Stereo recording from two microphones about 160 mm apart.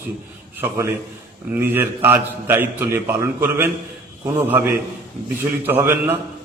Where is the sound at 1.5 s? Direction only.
10° right (ahead or behind).